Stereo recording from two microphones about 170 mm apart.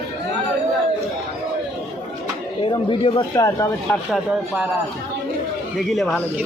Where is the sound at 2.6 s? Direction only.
30° left (ahead or behind).